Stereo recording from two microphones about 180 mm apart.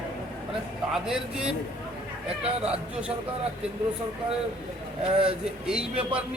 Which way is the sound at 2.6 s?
5° right (ahead or behind).